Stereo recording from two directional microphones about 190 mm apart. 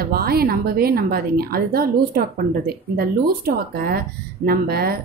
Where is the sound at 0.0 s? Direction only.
55° right (ahead or behind).